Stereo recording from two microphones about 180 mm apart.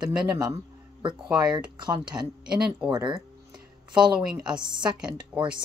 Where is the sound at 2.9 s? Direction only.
25° right (ahead or behind).